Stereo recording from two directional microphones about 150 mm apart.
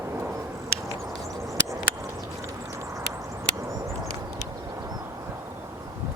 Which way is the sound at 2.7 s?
20° right (ahead or behind).